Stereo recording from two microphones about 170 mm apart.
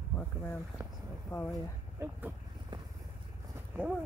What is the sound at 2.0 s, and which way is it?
Speech, 10° right (ahead or behind).